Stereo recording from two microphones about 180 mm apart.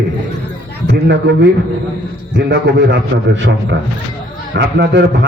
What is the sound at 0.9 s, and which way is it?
A man's voice, 70° right (ahead or behind).